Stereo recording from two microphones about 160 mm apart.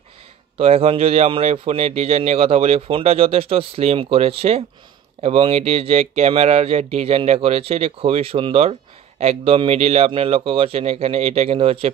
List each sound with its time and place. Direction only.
0.6 s a man's voice: 40° right (ahead or behind)